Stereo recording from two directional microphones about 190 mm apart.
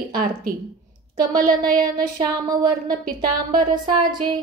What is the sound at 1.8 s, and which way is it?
Female singing, 25° right (ahead or behind).